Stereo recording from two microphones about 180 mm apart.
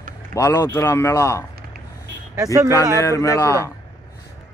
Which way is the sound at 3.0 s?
15° left (ahead or behind).